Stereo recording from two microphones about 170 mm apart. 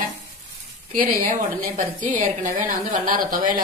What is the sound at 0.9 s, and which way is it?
A woman's voice, 55° right (ahead or behind).